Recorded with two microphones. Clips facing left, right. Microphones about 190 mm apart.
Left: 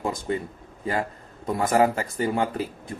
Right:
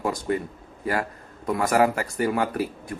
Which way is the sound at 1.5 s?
25° left (ahead or behind).